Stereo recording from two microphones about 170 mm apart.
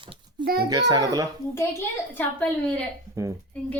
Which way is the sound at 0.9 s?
20° right (ahead or behind).